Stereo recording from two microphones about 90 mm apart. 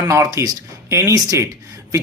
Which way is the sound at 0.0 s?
40° right (ahead or behind).